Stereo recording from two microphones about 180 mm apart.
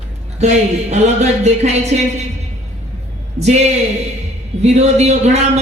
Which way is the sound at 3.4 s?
40° right (ahead or behind).